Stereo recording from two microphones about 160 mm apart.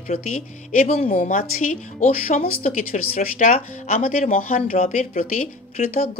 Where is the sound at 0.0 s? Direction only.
50° left (ahead or behind).